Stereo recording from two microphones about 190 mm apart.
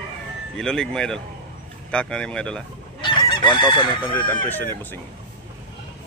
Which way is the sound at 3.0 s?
25° left (ahead or behind).